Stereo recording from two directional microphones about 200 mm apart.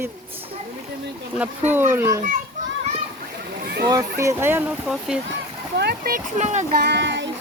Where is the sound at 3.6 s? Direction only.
50° right (ahead or behind).